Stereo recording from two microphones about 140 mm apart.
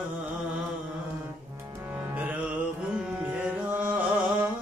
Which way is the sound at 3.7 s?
10° right (ahead or behind).